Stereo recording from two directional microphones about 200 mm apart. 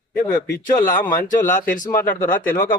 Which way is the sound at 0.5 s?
40° left (ahead or behind).